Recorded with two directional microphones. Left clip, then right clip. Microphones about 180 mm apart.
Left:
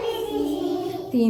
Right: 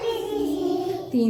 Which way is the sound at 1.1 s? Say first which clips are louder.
Left 2 dB; 10° left (ahead or behind).